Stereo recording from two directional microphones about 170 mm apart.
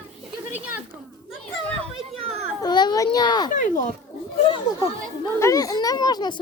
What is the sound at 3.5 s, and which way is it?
Speech, 50° left (ahead or behind).